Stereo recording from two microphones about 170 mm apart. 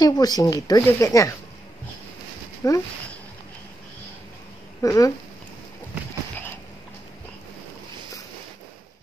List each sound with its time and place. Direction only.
0.0 s speech: 25° left (ahead or behind)
2.6 s speech: 20° left (ahead or behind)
4.8 s speech: 20° left (ahead or behind)